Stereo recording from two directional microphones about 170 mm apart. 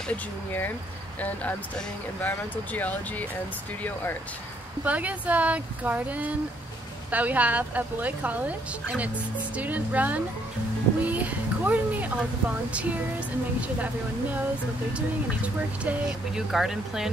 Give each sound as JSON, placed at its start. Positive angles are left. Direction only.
{"t": 2.2, "sound": "speech", "side_deg": 10}
{"t": 4.8, "sound": "speech", "side_deg": -10}
{"t": 15.0, "sound": "speech", "side_deg": -10}